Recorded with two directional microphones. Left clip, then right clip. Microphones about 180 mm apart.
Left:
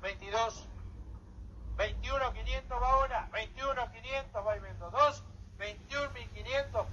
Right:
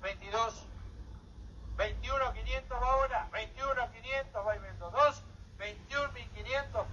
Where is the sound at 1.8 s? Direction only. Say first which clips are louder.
Even; 15° left (ahead or behind).